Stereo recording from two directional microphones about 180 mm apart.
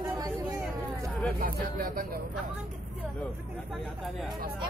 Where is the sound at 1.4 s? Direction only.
50° right (ahead or behind).